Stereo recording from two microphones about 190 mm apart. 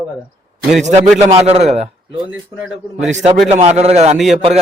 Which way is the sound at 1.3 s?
35° right (ahead or behind).